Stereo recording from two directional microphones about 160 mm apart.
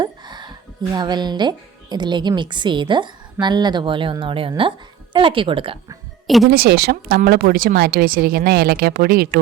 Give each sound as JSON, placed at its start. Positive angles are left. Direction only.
{"t": 0.0, "sound": "a woman's voice", "side_deg": -25}
{"t": 6.2, "sound": "speech", "side_deg": 0}
{"t": 6.5, "sound": "speech", "side_deg": -75}